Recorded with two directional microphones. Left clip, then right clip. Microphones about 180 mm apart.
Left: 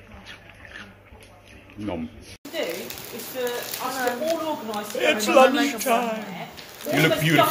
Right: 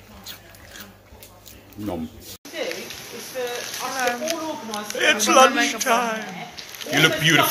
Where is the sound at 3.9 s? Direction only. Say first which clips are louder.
Right 2 dB; 15° left (ahead or behind).